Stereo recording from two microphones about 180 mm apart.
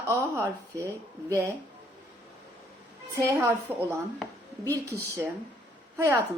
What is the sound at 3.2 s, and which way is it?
Speech, 15° right (ahead or behind).